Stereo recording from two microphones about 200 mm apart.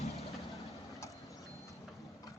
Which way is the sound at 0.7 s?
15° left (ahead or behind).